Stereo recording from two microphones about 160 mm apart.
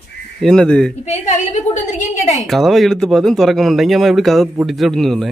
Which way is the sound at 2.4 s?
Centre (ahead or behind).